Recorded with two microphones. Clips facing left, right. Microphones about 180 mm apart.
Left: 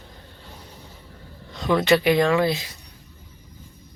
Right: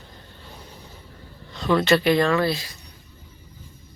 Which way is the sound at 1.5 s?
15° left (ahead or behind).